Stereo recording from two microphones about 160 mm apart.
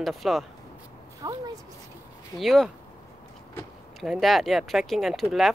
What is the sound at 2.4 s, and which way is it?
Speech, centre (ahead or behind).